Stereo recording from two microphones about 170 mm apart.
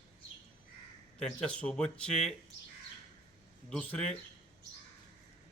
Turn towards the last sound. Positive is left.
turn(degrees=10)  # may be behind; listen again after turning